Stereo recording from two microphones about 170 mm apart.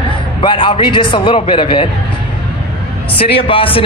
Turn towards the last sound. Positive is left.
turn(degrees=30)  # may be behind; listen again after turning